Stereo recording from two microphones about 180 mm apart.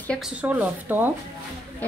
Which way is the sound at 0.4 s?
10° right (ahead or behind).